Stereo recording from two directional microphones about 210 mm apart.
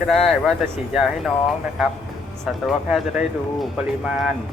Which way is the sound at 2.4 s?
Centre (ahead or behind).